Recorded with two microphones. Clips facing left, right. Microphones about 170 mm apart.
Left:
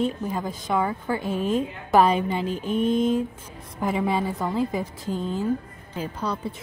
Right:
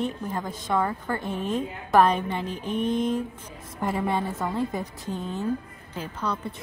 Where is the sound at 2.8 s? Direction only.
25° left (ahead or behind).